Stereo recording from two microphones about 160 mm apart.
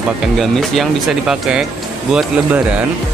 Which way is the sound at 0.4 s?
Centre (ahead or behind).